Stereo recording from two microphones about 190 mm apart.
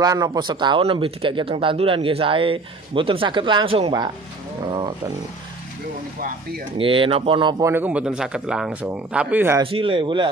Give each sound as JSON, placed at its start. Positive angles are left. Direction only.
{"t": 0.0, "sound": "speech", "side_deg": -20}
{"t": 6.1, "sound": "speech", "side_deg": -50}
{"t": 6.8, "sound": "speech", "side_deg": -30}
{"t": 7.7, "sound": "speech", "side_deg": -10}
{"t": 9.6, "sound": "speech", "side_deg": -30}